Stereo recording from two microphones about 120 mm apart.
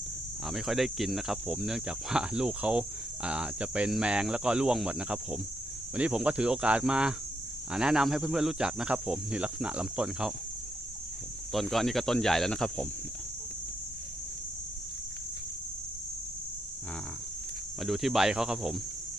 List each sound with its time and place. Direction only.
0.4 s speech: centre (ahead or behind)
11.5 s speech: centre (ahead or behind)
17.7 s speech: centre (ahead or behind)